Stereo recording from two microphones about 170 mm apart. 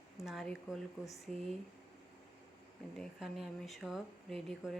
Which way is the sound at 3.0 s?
Centre (ahead or behind).